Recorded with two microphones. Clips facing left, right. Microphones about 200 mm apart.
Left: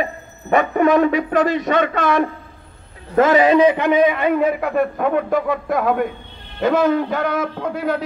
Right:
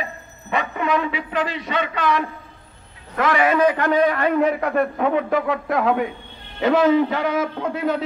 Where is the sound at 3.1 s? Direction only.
25° left (ahead or behind).